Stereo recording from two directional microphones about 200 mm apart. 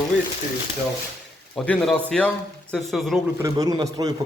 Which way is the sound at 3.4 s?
20° right (ahead or behind).